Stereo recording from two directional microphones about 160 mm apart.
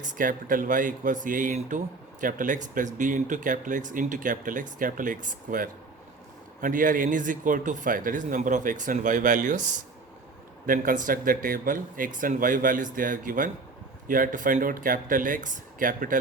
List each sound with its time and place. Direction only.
0.1 s speech: 55° right (ahead or behind)
10.7 s speech: 55° right (ahead or behind)